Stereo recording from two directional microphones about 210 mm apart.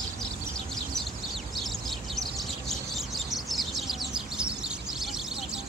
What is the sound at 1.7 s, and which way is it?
Bird, centre (ahead or behind).